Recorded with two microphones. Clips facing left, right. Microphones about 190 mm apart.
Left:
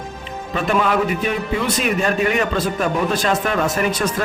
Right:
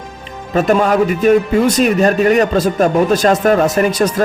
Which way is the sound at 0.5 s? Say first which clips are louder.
Right 6 dB; 40° right (ahead or behind).